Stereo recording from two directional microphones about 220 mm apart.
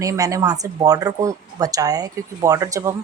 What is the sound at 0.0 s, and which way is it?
Speech, 15° right (ahead or behind).